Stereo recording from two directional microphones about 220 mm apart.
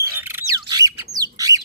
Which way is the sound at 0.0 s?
10° right (ahead or behind).